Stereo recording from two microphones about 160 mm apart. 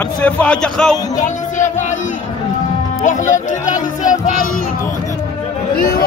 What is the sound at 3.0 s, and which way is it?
Speech, 50° left (ahead or behind).